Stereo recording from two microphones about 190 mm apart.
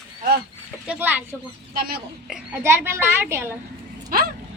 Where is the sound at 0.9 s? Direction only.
10° right (ahead or behind).